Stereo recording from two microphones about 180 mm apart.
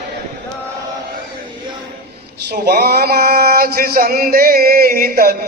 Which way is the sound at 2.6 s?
60° right (ahead or behind).